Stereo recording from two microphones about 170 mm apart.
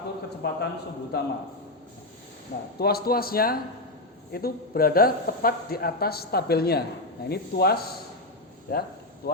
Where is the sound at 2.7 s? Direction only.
65° left (ahead or behind).